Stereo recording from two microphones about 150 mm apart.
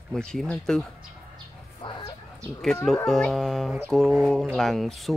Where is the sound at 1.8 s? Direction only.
35° left (ahead or behind).